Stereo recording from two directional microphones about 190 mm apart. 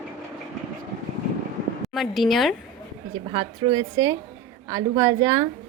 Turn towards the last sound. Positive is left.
turn(degrees=-15)  # may be behind; listen again after turning